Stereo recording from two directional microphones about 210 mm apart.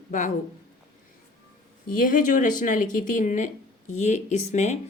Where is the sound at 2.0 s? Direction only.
40° left (ahead or behind).